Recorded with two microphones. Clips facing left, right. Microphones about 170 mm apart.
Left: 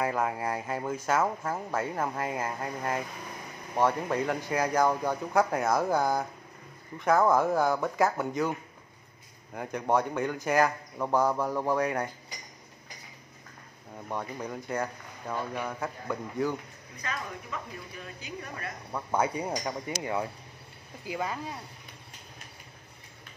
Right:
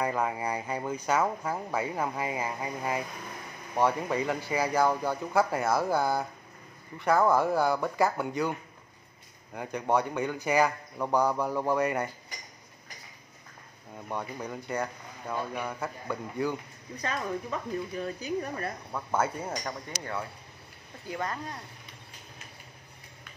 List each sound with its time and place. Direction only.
0.0 s speech: centre (ahead or behind)
1.4 s speech: 10° right (ahead or behind)
1.8 s speech: centre (ahead or behind)
14.0 s speech: centre (ahead or behind)
16.9 s speech: 35° right (ahead or behind)
18.9 s speech: 5° left (ahead or behind)